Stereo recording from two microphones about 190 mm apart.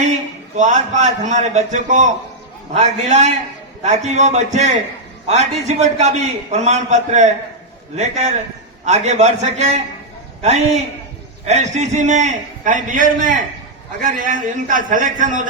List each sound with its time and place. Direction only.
0.0 s a man's voice: 40° right (ahead or behind)
11.4 s a man's voice: 40° right (ahead or behind)